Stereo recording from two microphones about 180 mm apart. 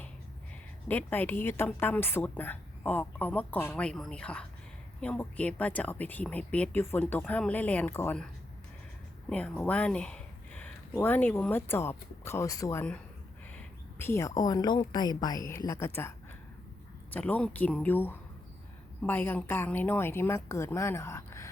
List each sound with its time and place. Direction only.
0.9 s a woman's voice: 10° left (ahead or behind)
9.3 s a woman's voice: 5° left (ahead or behind)